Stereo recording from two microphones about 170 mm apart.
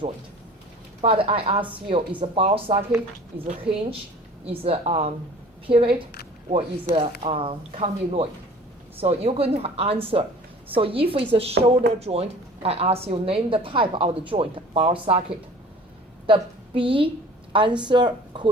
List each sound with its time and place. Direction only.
1.0 s a woman's voice: 35° right (ahead or behind)